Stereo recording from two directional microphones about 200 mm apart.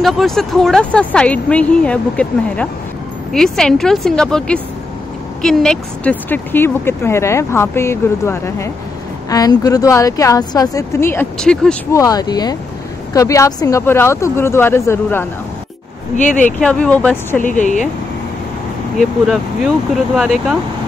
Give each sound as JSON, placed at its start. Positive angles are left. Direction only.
{"t": 0.0, "sound": "speech", "side_deg": 0}
{"t": 11.9, "sound": "speech", "side_deg": 15}
{"t": 16.2, "sound": "speech", "side_deg": 40}
{"t": 16.4, "sound": "speech", "side_deg": 5}
{"t": 17.4, "sound": "speech", "side_deg": 40}
{"t": 19.2, "sound": "speech", "side_deg": 0}